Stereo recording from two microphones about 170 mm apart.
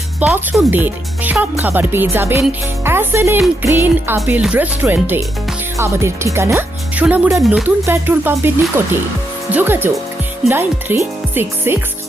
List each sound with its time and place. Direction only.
0.2 s speech: 5° right (ahead or behind)